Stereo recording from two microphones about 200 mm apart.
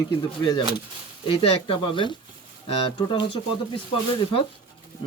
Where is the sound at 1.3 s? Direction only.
25° left (ahead or behind).